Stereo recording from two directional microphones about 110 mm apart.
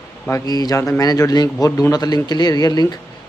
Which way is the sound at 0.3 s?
35° left (ahead or behind).